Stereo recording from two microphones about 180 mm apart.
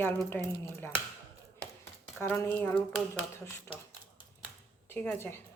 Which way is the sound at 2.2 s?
10° left (ahead or behind).